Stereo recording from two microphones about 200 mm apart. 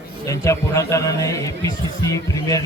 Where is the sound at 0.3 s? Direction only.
15° left (ahead or behind).